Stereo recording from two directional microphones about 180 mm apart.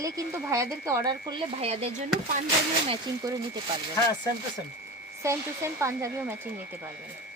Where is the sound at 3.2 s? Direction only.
20° right (ahead or behind).